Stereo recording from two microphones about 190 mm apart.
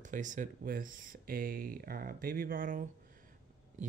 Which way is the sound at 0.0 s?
40° right (ahead or behind).